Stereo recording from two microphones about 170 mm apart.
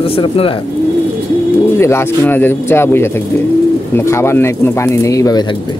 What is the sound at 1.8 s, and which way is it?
Speech, 15° left (ahead or behind).